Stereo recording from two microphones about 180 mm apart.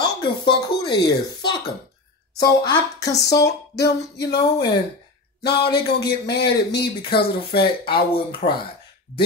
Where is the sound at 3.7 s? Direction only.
70° left (ahead or behind).